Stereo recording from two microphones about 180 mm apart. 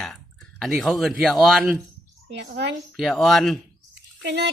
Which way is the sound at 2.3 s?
70° right (ahead or behind).